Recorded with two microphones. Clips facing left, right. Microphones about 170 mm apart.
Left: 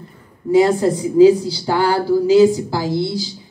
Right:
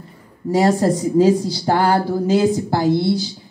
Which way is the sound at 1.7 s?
55° right (ahead or behind).